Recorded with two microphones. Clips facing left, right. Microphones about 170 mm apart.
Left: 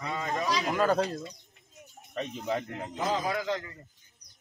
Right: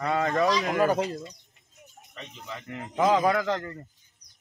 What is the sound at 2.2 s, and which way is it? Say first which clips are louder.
Speech: left 9 dB; 50° left (ahead or behind).